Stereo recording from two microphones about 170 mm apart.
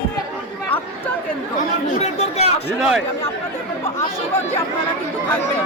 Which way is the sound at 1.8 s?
45° left (ahead or behind).